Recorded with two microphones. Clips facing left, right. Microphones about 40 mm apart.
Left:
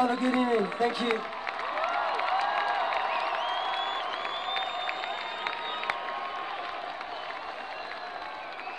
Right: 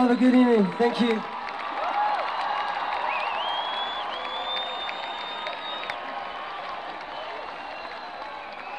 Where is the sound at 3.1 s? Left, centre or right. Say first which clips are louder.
Right 2 dB; right.